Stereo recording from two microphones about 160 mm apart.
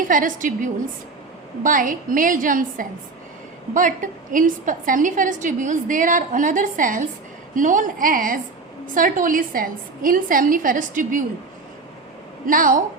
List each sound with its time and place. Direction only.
0.1 s a woman's voice: 55° right (ahead or behind)
12.5 s a woman's voice: 55° right (ahead or behind)